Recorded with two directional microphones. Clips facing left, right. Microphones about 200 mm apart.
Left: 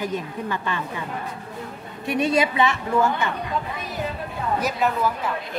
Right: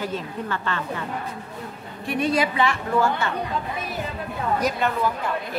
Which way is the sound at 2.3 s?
25° left (ahead or behind).